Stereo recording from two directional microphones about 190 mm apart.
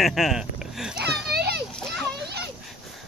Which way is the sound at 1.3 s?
60° right (ahead or behind).